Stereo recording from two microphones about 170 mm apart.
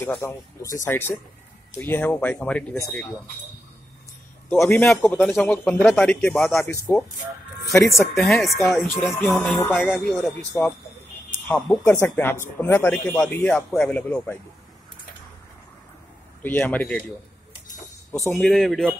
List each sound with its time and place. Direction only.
0.0 s a man's voice: 15° left (ahead or behind)
4.5 s a man's voice: 10° left (ahead or behind)
7.6 s a man's voice: 20° left (ahead or behind)
8.1 s a man's voice: centre (ahead or behind)
10.1 s a man's voice: 5° left (ahead or behind)
16.4 s a man's voice: 10° left (ahead or behind)
18.2 s a man's voice: 10° left (ahead or behind)